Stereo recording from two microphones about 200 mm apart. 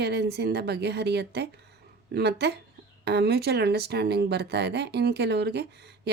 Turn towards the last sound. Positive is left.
turn(degrees=-55)  # may be behind; listen again after turning